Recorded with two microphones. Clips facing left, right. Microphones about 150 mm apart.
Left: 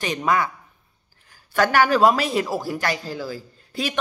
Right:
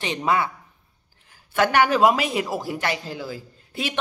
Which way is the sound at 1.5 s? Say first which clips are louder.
Left 1 dB; 20° right (ahead or behind).